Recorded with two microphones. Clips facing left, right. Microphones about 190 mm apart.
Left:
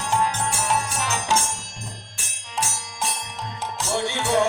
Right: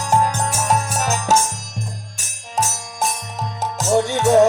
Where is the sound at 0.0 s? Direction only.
45° right (ahead or behind).